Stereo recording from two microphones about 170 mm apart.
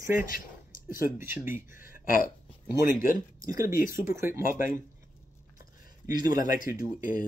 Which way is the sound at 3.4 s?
20° right (ahead or behind).